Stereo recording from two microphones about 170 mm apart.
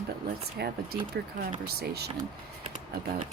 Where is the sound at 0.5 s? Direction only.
70° right (ahead or behind).